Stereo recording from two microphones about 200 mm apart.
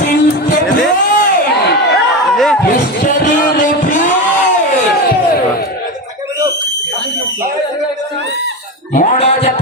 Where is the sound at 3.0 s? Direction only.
40° left (ahead or behind).